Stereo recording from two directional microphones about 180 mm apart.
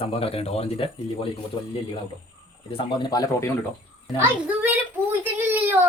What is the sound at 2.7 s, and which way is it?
Speech, 25° left (ahead or behind).